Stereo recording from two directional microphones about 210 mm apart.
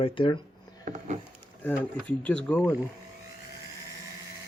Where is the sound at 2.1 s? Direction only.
5° left (ahead or behind).